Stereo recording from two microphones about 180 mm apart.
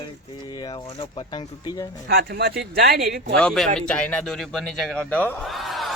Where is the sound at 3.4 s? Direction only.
5° left (ahead or behind).